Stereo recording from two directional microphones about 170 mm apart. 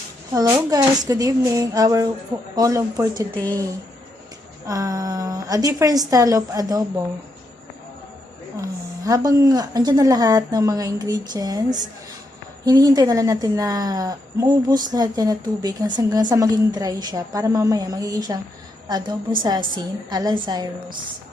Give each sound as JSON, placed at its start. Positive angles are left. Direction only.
{"t": 0.3, "sound": "a woman's voice", "side_deg": -20}
{"t": 4.6, "sound": "a woman's voice", "side_deg": -20}
{"t": 8.6, "sound": "a woman's voice", "side_deg": -20}